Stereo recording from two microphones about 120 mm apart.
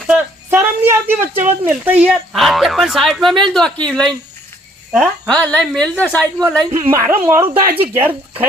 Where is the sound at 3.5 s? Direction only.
5° left (ahead or behind).